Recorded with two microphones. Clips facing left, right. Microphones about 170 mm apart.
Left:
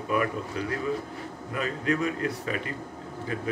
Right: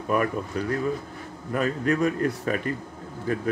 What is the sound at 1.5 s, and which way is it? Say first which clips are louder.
A man's voice: right 4 dB; 50° right (ahead or behind).